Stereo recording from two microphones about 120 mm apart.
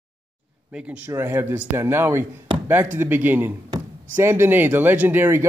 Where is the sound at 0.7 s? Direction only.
10° right (ahead or behind).